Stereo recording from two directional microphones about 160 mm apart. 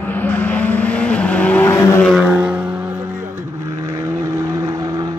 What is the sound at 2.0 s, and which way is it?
Vehicle, 5° right (ahead or behind).